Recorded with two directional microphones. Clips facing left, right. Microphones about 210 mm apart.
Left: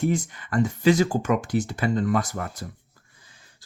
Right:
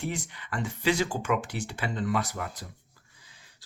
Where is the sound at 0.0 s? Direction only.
45° left (ahead or behind).